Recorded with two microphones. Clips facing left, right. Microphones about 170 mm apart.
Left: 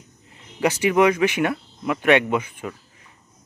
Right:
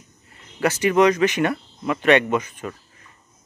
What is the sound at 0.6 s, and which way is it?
Speech, 10° left (ahead or behind).